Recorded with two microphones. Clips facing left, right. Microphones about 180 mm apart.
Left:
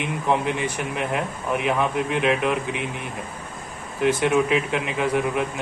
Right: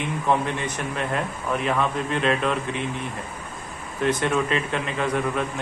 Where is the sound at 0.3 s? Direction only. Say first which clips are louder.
Left 1 dB; 10° left (ahead or behind).